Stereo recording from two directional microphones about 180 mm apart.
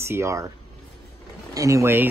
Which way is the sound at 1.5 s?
15° right (ahead or behind).